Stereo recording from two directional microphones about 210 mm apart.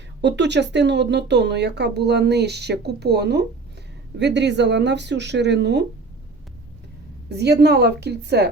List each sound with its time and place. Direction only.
0.2 s speech: 55° right (ahead or behind)
7.3 s speech: 50° right (ahead or behind)